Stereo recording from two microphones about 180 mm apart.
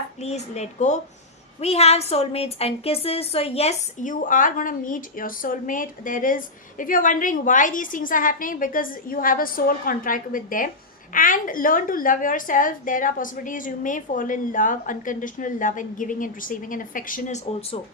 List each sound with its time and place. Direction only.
0.2 s a woman's voice: 35° left (ahead or behind)